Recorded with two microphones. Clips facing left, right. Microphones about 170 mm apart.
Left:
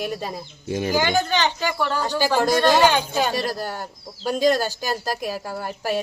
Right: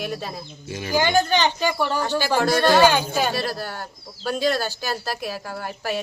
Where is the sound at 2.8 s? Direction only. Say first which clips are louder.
Right 1 dB; 10° right (ahead or behind).